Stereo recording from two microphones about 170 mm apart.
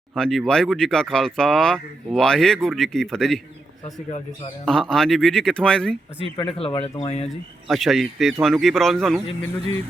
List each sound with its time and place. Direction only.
0.2 s speech: centre (ahead or behind)
4.6 s speech: 5° left (ahead or behind)
6.2 s speech: 30° left (ahead or behind)
7.3 s speech: centre (ahead or behind)